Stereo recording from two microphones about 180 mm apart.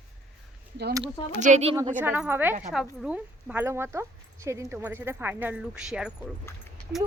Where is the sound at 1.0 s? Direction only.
40° right (ahead or behind).